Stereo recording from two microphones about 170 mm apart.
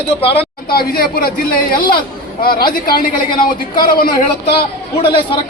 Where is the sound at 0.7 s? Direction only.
60° left (ahead or behind).